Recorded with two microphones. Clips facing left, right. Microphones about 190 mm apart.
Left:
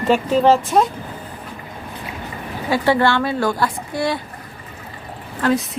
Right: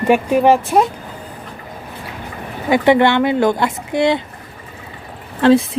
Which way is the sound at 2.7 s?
20° right (ahead or behind).